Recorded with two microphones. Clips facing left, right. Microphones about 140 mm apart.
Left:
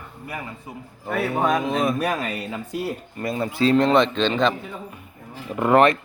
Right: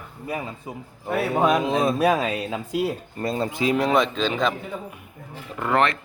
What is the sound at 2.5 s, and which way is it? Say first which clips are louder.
Speech: right 3 dB; 90° right.